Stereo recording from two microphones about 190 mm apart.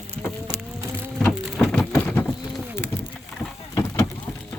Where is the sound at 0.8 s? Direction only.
10° right (ahead or behind).